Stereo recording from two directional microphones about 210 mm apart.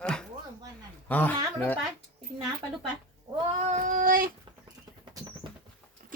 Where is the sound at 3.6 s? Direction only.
35° right (ahead or behind).